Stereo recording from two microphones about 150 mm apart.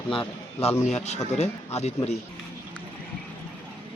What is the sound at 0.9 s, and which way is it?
Speech, 45° left (ahead or behind).